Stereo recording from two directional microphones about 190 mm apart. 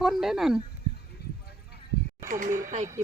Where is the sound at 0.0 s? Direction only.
Centre (ahead or behind).